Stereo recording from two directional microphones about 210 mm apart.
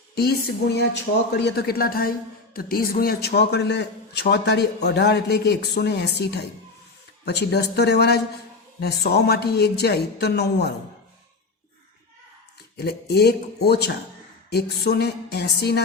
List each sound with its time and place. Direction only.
0.2 s a man's voice: 50° left (ahead or behind)
12.7 s a man's voice: 50° left (ahead or behind)